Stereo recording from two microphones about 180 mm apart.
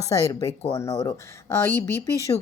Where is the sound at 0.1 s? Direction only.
15° left (ahead or behind).